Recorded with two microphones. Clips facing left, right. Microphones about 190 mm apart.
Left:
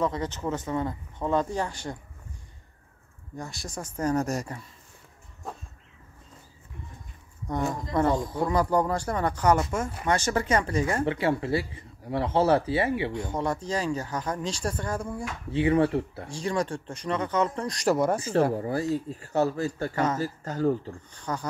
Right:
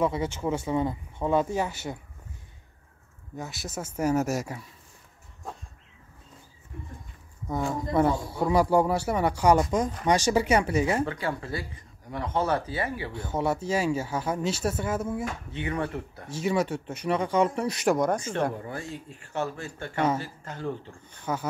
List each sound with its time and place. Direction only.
0.0 s speech: 10° right (ahead or behind)
3.3 s speech: 5° right (ahead or behind)
7.4 s speech: 5° right (ahead or behind)
11.1 s speech: 25° left (ahead or behind)
13.3 s speech: 5° right (ahead or behind)
15.5 s speech: 30° left (ahead or behind)
16.3 s speech: 5° right (ahead or behind)
17.9 s speech: 5° left (ahead or behind)
18.5 s speech: 35° left (ahead or behind)
21.2 s speech: 5° right (ahead or behind)